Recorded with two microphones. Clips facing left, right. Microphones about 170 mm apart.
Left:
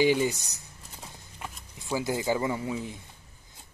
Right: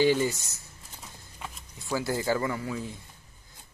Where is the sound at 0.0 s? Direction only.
15° left (ahead or behind).